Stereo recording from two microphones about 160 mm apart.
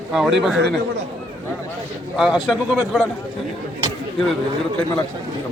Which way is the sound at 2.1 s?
5° right (ahead or behind).